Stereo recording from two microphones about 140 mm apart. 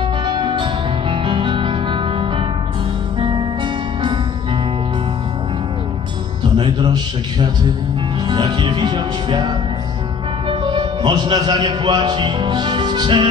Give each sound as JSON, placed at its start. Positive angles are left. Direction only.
{"t": 0.2, "sound": "music", "side_deg": -35}
{"t": 6.5, "sound": "a man's voice", "side_deg": -30}
{"t": 8.3, "sound": "music", "side_deg": -35}
{"t": 10.5, "sound": "a man's voice", "side_deg": -35}